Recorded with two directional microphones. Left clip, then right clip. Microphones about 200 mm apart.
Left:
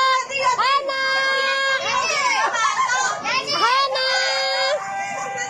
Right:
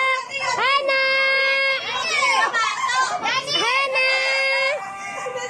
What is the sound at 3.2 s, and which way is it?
Children playing, 30° right (ahead or behind).